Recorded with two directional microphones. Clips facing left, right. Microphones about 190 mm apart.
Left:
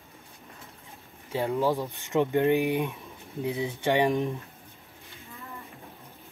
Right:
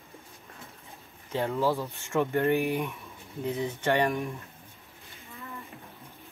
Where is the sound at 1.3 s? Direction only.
15° left (ahead or behind).